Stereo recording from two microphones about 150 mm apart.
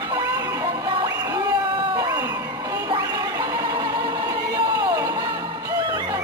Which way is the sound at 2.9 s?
25° right (ahead or behind).